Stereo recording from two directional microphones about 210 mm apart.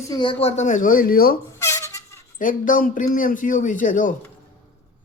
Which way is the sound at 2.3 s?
40° left (ahead or behind).